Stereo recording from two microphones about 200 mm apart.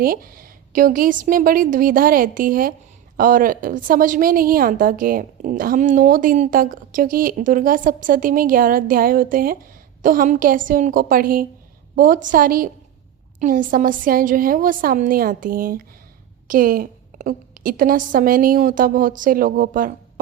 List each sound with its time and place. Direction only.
0.0 s a woman's voice: 45° right (ahead or behind)